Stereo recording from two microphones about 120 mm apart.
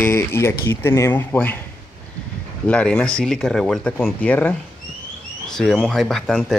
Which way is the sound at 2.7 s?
10° left (ahead or behind).